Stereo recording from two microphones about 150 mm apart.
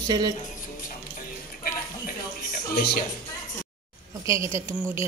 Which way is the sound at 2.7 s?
90° left.